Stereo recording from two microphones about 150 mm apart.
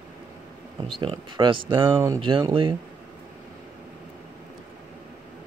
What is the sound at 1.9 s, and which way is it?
Speech, 15° right (ahead or behind).